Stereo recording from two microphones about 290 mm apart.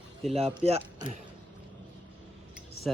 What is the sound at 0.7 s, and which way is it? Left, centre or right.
Speech, centre.